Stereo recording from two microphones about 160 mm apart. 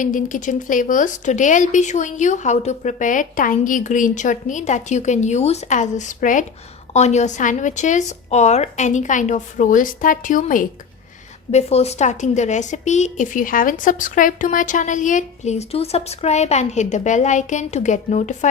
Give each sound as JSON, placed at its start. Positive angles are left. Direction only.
{"t": 0.0, "sound": "speech", "side_deg": 55}
{"t": 11.5, "sound": "speech", "side_deg": 40}